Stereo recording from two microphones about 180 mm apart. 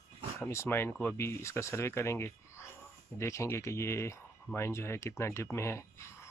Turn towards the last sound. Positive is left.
turn(degrees=15)  # may be behind; listen again after turning